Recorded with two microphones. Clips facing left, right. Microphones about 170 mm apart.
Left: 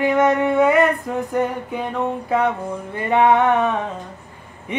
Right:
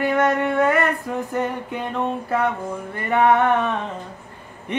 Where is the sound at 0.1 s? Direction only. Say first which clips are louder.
Left 3 dB; 15° left (ahead or behind).